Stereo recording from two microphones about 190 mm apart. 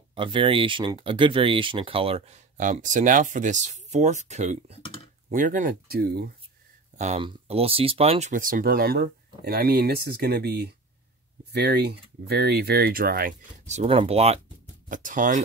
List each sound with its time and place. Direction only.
0.1 s speech: 25° right (ahead or behind); by 6.3 s 55° right (ahead or behind)
7.0 s speech: 35° right (ahead or behind)
14.9 s speech: 45° right (ahead or behind)